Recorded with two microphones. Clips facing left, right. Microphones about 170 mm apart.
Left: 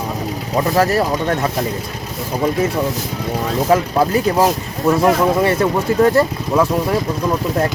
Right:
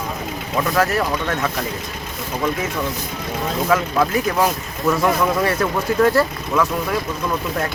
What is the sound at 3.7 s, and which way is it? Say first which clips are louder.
Speech: left 4 dB; 35° left (ahead or behind).